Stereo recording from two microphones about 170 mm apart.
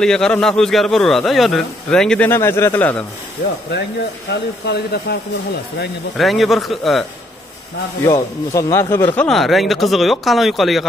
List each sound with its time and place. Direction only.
0.0 s a man's voice: 5° left (ahead or behind)
4.3 s speech: 75° left (ahead or behind)
6.1 s a man's voice: centre (ahead or behind)
8.0 s speech: 20° left (ahead or behind)
9.1 s a man's voice: 5° left (ahead or behind)